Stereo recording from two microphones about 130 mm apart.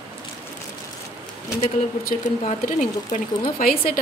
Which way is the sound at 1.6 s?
75° left (ahead or behind).